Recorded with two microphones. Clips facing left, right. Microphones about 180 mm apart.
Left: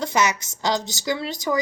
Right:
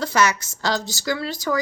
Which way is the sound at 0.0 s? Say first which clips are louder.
Right 2 dB; 20° left (ahead or behind).